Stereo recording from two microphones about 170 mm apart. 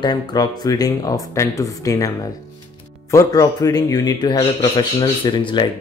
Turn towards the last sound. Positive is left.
turn(degrees=25)  # may be behind; listen again after turning